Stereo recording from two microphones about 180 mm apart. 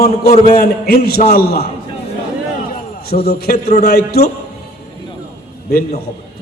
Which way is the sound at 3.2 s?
60° left (ahead or behind).